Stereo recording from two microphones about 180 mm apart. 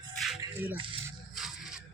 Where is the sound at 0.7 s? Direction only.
30° right (ahead or behind).